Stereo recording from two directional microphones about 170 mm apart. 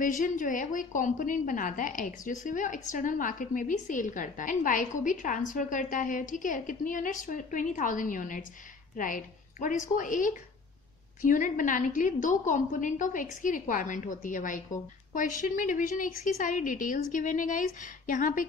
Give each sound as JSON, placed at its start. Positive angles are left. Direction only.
{"t": 0.0, "sound": "a woman's voice", "side_deg": 50}